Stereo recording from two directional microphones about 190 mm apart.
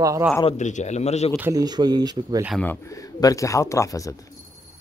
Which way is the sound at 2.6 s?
15° left (ahead or behind).